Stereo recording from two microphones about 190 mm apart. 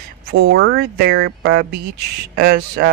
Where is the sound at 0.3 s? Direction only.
70° right (ahead or behind).